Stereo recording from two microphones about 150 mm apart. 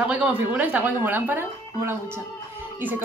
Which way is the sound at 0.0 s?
10° right (ahead or behind).